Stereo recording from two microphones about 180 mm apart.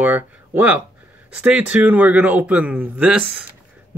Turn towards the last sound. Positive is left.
turn(degrees=-5)  # may be behind; listen again after turning